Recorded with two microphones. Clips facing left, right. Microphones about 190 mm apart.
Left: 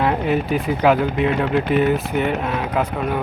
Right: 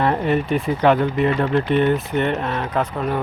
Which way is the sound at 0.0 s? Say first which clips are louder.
Even; centre (ahead or behind).